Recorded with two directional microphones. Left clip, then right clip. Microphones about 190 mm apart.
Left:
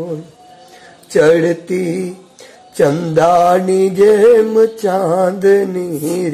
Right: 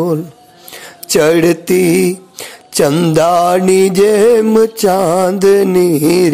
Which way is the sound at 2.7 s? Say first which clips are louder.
Right 2 dB; 30° right (ahead or behind).